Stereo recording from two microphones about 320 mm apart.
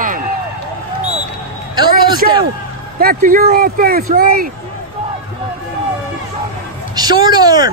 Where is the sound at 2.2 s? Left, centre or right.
Right.